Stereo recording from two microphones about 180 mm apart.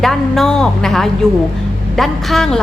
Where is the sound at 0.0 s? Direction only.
Centre (ahead or behind).